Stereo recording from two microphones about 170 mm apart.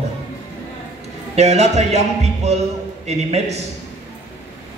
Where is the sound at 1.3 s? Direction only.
40° right (ahead or behind).